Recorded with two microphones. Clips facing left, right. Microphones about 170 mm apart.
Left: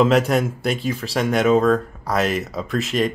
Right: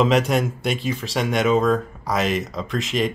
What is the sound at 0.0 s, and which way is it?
Speech, centre (ahead or behind).